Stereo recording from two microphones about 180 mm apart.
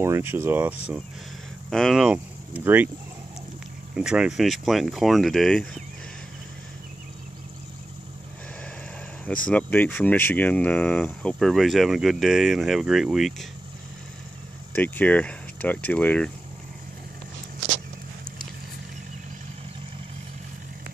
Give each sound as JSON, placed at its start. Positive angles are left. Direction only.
{"t": 0.0, "sound": "speech", "side_deg": -15}
{"t": 1.7, "sound": "speech", "side_deg": 0}
{"t": 3.9, "sound": "speech", "side_deg": -5}
{"t": 9.5, "sound": "speech", "side_deg": 10}
{"t": 14.7, "sound": "speech", "side_deg": 10}